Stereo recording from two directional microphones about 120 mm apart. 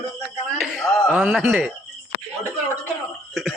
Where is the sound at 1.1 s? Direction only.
15° right (ahead or behind).